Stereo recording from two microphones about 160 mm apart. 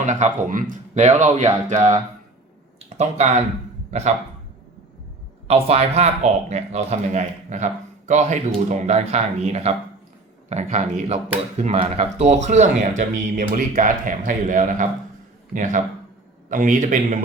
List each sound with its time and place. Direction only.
0.0 s speech: 50° right (ahead or behind)
3.0 s speech: 45° right (ahead or behind)
5.5 s a man's voice: 40° right (ahead or behind)